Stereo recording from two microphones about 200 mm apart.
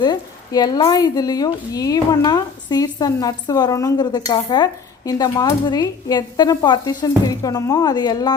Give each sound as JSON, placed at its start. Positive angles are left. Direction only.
{"t": 0.0, "sound": "speech", "side_deg": 20}